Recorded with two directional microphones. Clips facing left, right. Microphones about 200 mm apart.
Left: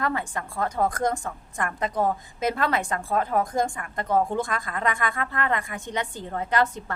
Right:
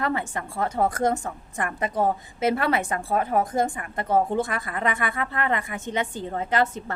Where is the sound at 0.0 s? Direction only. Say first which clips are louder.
Right 1 dB; 20° right (ahead or behind).